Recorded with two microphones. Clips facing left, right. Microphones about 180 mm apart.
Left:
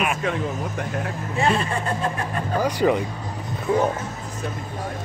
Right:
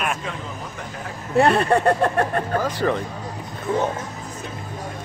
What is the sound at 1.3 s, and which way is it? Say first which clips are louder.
Speech: right 6 dB; 60° right (ahead or behind).